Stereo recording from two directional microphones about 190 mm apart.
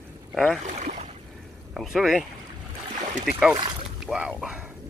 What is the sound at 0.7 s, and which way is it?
Speech, 40° right (ahead or behind).